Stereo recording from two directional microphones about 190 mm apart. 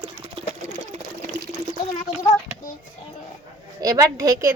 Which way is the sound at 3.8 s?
20° right (ahead or behind).